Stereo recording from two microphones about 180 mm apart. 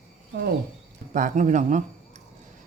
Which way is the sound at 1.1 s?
45° right (ahead or behind).